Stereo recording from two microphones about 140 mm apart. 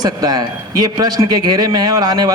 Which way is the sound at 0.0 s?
25° right (ahead or behind).